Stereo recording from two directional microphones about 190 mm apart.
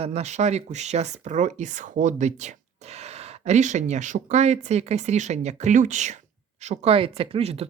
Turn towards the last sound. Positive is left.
turn(degrees=-30)  # may be behind; listen again after turning